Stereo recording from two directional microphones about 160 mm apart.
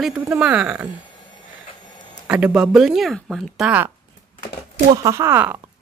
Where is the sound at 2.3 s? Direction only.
5° right (ahead or behind).